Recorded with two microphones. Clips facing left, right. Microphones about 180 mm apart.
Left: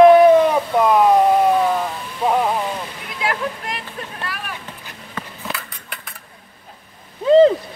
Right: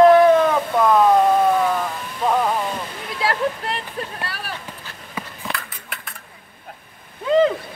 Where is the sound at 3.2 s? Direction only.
35° right (ahead or behind).